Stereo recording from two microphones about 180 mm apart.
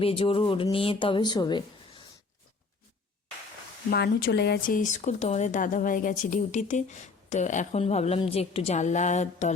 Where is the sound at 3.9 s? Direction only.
65° left (ahead or behind).